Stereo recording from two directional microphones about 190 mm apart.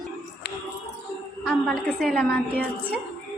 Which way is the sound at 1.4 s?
5° left (ahead or behind).